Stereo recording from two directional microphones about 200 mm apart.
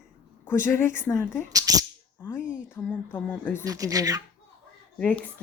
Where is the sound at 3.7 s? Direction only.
15° right (ahead or behind).